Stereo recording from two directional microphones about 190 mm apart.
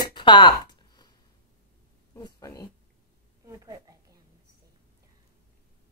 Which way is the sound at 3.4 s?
20° right (ahead or behind).